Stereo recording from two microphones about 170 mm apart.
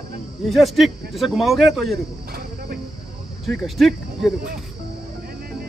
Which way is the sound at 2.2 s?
65° right (ahead or behind).